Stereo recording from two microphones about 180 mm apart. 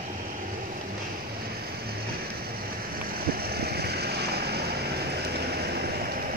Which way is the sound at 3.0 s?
55° right (ahead or behind).